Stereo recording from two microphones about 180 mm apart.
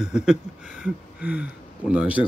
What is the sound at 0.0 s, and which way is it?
Speech, 5° right (ahead or behind).